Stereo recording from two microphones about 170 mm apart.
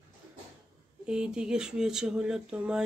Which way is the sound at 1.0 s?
5° right (ahead or behind).